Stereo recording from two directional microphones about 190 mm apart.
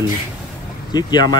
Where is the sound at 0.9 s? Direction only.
20° left (ahead or behind).